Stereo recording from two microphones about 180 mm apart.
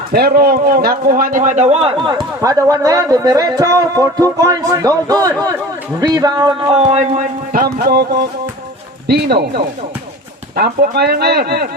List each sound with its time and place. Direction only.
0.1 s a man's voice: 60° right (ahead or behind)
10.5 s speech: 55° right (ahead or behind)